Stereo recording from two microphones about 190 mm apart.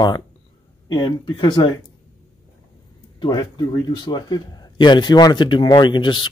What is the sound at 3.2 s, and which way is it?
A man's voice, 20° left (ahead or behind).